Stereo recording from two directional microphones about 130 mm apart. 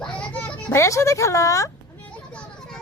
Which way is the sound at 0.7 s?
25° left (ahead or behind).